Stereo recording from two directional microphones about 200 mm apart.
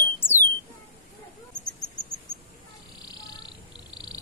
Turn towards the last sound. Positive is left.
turn(degrees=20)  # may be behind; listen again after turning